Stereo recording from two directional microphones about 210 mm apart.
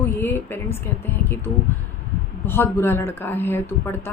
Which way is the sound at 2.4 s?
10° left (ahead or behind).